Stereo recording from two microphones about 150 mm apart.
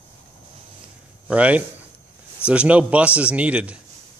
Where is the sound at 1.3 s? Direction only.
10° right (ahead or behind).